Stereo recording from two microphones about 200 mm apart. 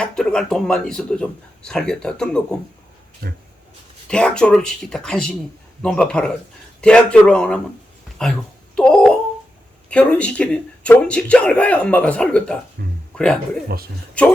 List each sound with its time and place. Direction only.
0.0 s a man's voice: 5° left (ahead or behind)
3.2 s speech: 50° right (ahead or behind)
4.1 s a man's voice: 5° left (ahead or behind)
8.2 s a sound: 5° left (ahead or behind)
9.9 s a man's voice: 5° left (ahead or behind)
12.8 s speech: 50° right (ahead or behind)
13.1 s speech: 5° left (ahead or behind)